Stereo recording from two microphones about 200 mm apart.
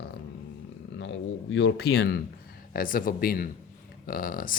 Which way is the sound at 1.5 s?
60° left (ahead or behind).